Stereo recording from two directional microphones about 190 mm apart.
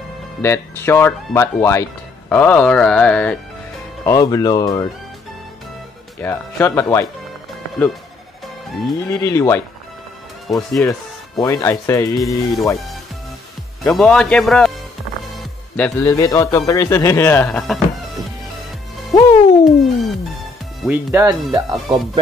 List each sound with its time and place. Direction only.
0.4 s speech: 15° left (ahead or behind)
4.0 s speech: 20° left (ahead or behind)
6.2 s speech: 15° left (ahead or behind)
9.1 s speech: 15° left (ahead or behind)
10.5 s a man's voice: centre (ahead or behind)
10.9 s speech: 20° left (ahead or behind)
12.2 s a man's voice: centre (ahead or behind)
13.9 s a man's voice: 5° left (ahead or behind)
15.7 s speech: 10° left (ahead or behind)
19.6 s music: centre (ahead or behind)
20.8 s speech: 10° right (ahead or behind)
21.5 s speech: 25° right (ahead or behind)